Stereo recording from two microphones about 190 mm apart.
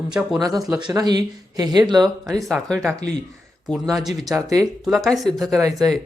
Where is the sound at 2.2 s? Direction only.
Centre (ahead or behind).